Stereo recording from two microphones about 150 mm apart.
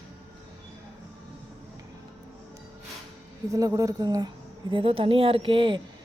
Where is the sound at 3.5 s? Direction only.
20° right (ahead or behind).